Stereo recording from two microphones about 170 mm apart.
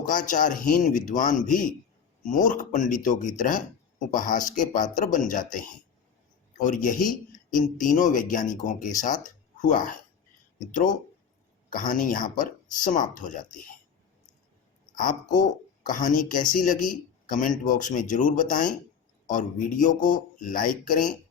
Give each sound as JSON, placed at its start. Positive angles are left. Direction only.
{"t": 0.0, "sound": "speech", "side_deg": 50}
{"t": 11.7, "sound": "speech", "side_deg": 50}
{"t": 14.9, "sound": "speech", "side_deg": 50}